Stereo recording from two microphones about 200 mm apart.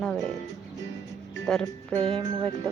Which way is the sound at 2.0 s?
25° right (ahead or behind).